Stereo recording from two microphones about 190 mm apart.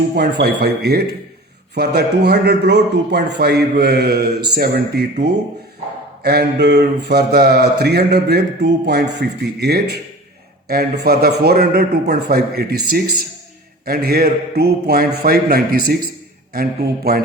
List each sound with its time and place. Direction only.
0.2 s mantra: 60° right (ahead or behind)
6.2 s mantra: 60° right (ahead or behind)
10.7 s a man's voice: 55° right (ahead or behind)